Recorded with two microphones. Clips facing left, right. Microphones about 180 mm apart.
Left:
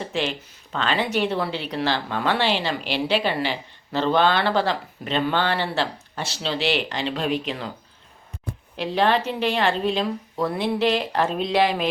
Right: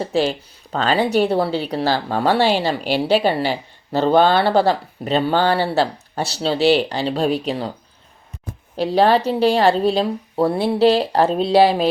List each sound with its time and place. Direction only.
0.0 s speech: 35° right (ahead or behind)
8.7 s speech: 35° right (ahead or behind)